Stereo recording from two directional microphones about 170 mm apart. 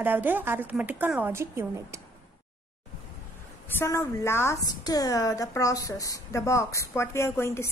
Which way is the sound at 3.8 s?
15° left (ahead or behind).